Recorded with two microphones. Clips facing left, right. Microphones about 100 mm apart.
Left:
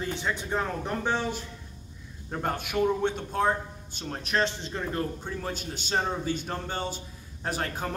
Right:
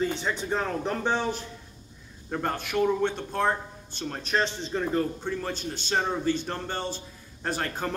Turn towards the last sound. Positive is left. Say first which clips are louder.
# right 1 dB
turn(degrees=10)  # may be behind; listen again after turning